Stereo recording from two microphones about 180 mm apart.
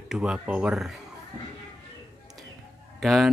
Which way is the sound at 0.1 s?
5° right (ahead or behind).